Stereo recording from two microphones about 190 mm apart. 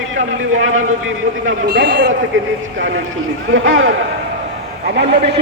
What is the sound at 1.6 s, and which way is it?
Speech, 60° right (ahead or behind).